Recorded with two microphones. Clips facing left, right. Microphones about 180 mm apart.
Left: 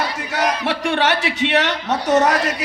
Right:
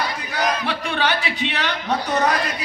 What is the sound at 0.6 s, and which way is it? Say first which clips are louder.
Speech: left 4 dB; 70° left (ahead or behind).